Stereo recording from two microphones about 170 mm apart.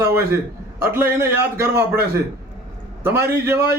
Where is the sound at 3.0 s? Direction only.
15° right (ahead or behind).